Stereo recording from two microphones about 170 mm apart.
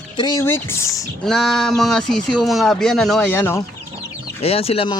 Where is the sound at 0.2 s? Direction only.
20° left (ahead or behind).